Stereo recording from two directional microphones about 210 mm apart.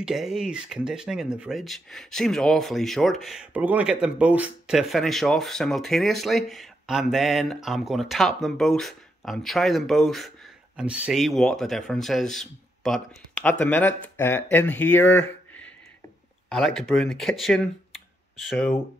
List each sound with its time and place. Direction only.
0.0 s speech: centre (ahead or behind)